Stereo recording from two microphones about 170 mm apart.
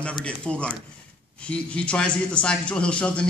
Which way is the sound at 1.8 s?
5° left (ahead or behind).